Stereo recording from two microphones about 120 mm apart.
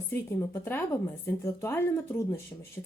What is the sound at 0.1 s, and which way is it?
Speech, 25° left (ahead or behind).